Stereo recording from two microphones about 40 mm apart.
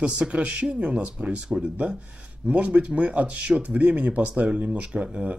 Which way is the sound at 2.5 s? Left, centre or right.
Right.